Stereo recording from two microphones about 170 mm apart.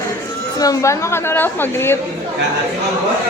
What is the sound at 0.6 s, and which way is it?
A woman's voice, 20° left (ahead or behind).